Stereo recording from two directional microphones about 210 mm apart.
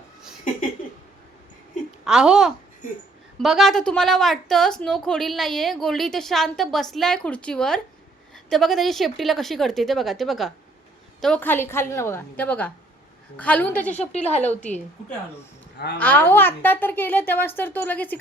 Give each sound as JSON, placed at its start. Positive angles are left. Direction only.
{"t": 2.0, "sound": "a woman's voice", "side_deg": -5}
{"t": 14.0, "sound": "speech", "side_deg": 30}
{"t": 14.4, "sound": "a woman's voice", "side_deg": 5}
{"t": 16.0, "sound": "a woman's voice", "side_deg": 10}